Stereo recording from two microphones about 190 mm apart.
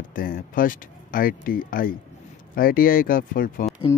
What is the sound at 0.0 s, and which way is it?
Speech, 45° left (ahead or behind).